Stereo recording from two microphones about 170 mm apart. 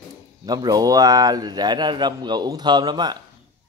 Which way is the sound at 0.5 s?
25° right (ahead or behind).